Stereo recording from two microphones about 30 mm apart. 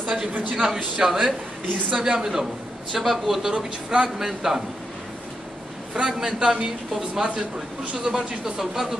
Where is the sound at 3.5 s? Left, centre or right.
Right.